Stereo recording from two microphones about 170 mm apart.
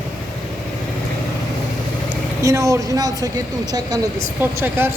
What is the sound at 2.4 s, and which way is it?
Speech, 20° right (ahead or behind).